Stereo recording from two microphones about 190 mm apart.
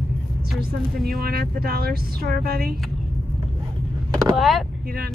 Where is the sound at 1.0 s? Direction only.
55° right (ahead or behind).